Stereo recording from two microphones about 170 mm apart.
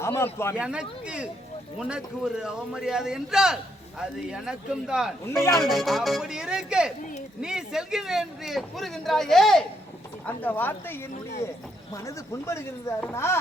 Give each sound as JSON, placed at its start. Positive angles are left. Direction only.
{"t": 0.0, "sound": "a sound", "side_deg": 15}
{"t": 0.5, "sound": "speech", "side_deg": -5}
{"t": 5.2, "sound": "speech", "side_deg": 15}
{"t": 5.5, "sound": "speech", "side_deg": 0}
{"t": 12.0, "sound": "speech", "side_deg": 15}